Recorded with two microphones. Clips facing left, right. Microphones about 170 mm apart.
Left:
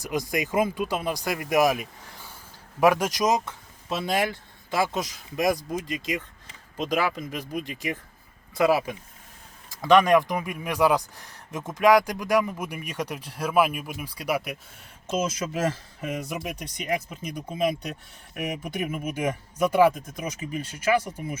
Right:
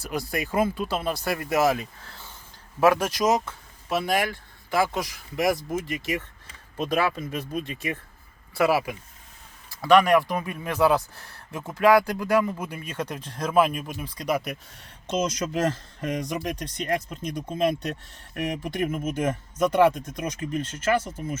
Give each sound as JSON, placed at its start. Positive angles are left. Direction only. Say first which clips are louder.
{"t": 0.0, "sound": "speech", "louder": "left 2 dB", "side_deg": 15}
{"t": 7.7, "sound": "speech", "louder": "even", "side_deg": 15}